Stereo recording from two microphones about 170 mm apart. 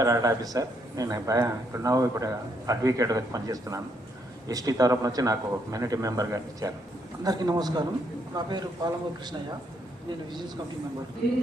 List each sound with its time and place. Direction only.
0.0 s a man's voice: 20° right (ahead or behind)